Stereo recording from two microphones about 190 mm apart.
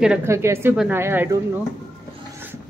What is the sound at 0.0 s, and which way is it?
A woman's voice, 5° right (ahead or behind).